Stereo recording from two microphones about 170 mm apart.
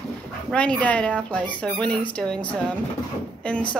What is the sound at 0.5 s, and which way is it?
Speech, 5° left (ahead or behind).